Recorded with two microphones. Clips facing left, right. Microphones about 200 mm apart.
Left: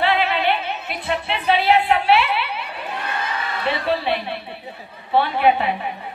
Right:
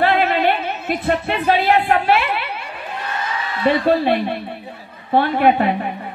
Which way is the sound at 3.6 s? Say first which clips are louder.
Right 7 dB; 50° right (ahead or behind).